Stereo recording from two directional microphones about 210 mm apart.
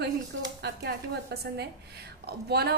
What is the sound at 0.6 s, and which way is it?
A woman's voice, 50° right (ahead or behind).